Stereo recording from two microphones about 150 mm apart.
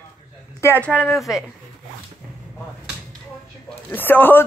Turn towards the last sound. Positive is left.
turn(degrees=15)  # may be behind; listen again after turning